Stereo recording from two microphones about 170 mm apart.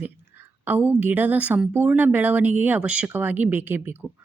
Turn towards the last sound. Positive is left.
turn(degrees=-10)  # may be behind; listen again after turning